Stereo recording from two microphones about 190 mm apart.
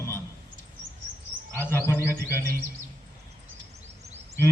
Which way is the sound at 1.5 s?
10° left (ahead or behind).